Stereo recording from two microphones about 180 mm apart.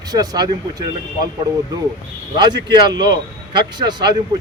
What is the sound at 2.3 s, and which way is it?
Speech, 25° right (ahead or behind).